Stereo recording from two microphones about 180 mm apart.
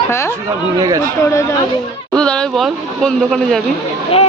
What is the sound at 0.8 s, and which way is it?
Speech, 20° right (ahead or behind).